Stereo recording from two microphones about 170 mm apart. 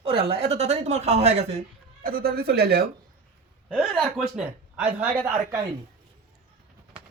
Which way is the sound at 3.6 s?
Centre (ahead or behind).